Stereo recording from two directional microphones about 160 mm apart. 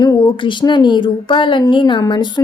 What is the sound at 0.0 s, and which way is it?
Speech, 25° left (ahead or behind).